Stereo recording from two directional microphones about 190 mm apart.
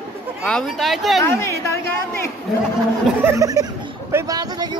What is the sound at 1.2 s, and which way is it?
A woman's voice, 15° left (ahead or behind).